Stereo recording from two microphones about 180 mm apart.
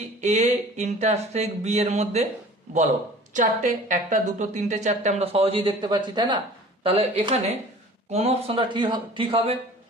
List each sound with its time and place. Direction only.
0.2 s a woman's voice: 40° right (ahead or behind)
3.3 s a woman's voice: 45° right (ahead or behind); by 9.4 s 25° right (ahead or behind)